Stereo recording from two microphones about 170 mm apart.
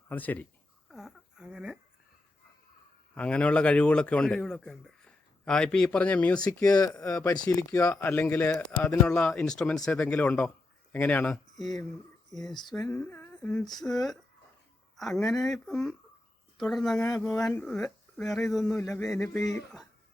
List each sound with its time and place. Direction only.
0.1 s speech: 10° left (ahead or behind)
0.9 s a sound: centre (ahead or behind)
3.2 s a man's voice: 5° left (ahead or behind)
7.0 s a man's voice: 20° left (ahead or behind); by 12.5 s centre (ahead or behind)
12.5 s female singing: 25° left (ahead or behind)
12.8 s humming: 10° left (ahead or behind)
13.8 s a man's voice: centre (ahead or behind)
19.1 s speech: 15° left (ahead or behind)
19.5 s a man's voice: centre (ahead or behind)